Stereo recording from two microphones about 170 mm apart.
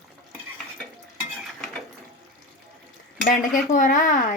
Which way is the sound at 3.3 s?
50° left (ahead or behind).